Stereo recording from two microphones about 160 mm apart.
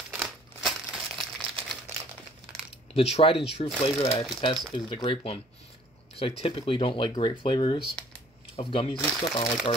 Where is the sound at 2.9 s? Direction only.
40° left (ahead or behind).